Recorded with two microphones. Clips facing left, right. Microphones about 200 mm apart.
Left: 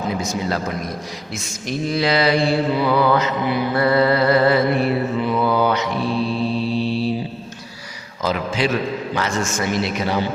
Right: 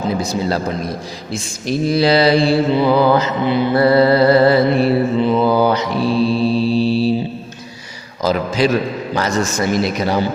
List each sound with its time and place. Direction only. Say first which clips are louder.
0.1 s speech: right 5 dB; 35° right (ahead or behind)
6.2 s mantra: right 6 dB; 35° right (ahead or behind)
8.2 s speech: right 5 dB; 40° right (ahead or behind)